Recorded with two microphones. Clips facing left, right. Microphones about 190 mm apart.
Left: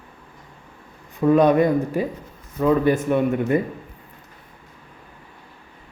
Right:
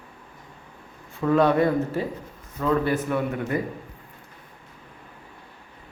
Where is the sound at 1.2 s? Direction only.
20° left (ahead or behind).